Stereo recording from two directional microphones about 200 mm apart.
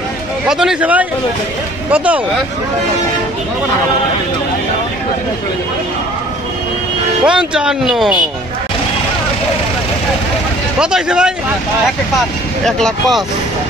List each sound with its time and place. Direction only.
0.5 s speech: 5° right (ahead or behind)
7.2 s speech: 5° right (ahead or behind)
10.8 s speech: 5° right (ahead or behind)
12.6 s speech: centre (ahead or behind)